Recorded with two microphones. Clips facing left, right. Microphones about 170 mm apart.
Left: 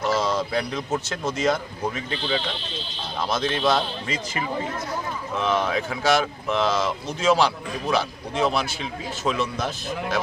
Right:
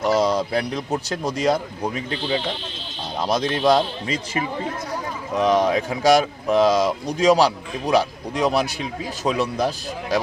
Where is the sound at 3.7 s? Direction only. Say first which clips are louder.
Right 8 dB; 40° right (ahead or behind).